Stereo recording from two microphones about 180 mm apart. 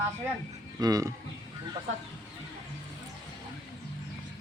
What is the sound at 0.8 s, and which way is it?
Speech, 20° right (ahead or behind).